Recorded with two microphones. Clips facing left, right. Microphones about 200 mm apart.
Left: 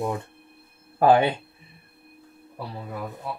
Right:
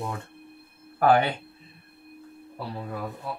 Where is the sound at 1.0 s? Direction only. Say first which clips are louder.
Left 3 dB; 20° left (ahead or behind).